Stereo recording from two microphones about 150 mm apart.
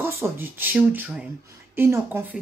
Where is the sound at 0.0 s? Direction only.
15° right (ahead or behind).